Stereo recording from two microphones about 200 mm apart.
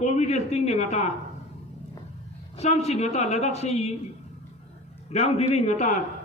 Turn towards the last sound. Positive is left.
turn(degrees=35)  # may be behind; listen again after turning